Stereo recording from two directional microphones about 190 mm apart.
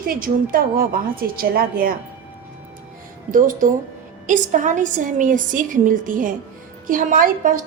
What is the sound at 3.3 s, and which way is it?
A woman's voice, 45° right (ahead or behind).